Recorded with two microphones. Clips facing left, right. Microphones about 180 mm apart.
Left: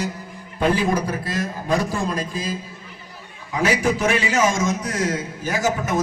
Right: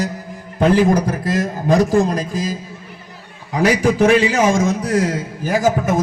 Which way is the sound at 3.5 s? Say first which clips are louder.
Right 6 dB; 35° right (ahead or behind).